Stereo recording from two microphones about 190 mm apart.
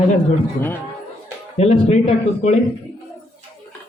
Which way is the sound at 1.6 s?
35° left (ahead or behind).